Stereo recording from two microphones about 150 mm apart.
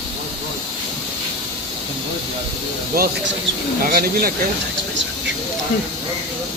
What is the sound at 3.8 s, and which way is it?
Speech, 75° right (ahead or behind).